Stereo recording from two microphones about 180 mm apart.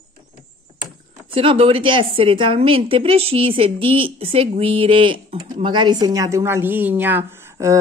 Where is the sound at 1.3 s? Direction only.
30° right (ahead or behind).